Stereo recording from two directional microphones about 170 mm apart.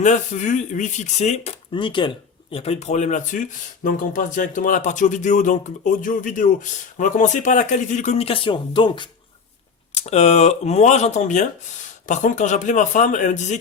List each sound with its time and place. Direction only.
0.0 s speech: 45° left (ahead or behind)
1.7 s speech: 30° left (ahead or behind)
9.9 s speech: 40° left (ahead or behind)